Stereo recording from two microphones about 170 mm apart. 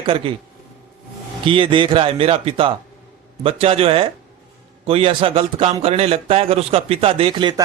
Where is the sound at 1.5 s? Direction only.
30° right (ahead or behind).